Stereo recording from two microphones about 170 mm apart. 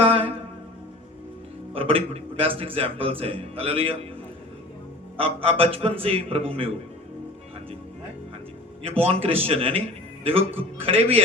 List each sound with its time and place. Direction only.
0.0 s music: 35° right (ahead or behind)
1.7 s speech: 35° right (ahead or behind)
5.1 s speech: 35° right (ahead or behind)
8.8 s speech: 35° right (ahead or behind)